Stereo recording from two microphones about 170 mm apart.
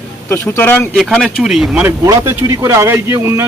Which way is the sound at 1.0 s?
Centre (ahead or behind).